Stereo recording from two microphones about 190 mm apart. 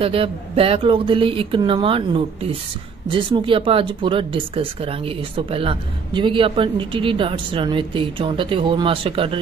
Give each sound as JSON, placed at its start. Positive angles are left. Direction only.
{"t": 0.0, "sound": "speech", "side_deg": -30}